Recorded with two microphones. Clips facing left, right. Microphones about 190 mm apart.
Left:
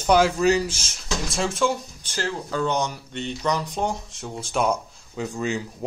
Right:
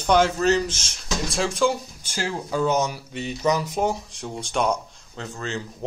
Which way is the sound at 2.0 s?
10° right (ahead or behind).